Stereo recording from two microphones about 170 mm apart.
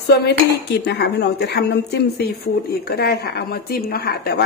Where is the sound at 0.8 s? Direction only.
80° left.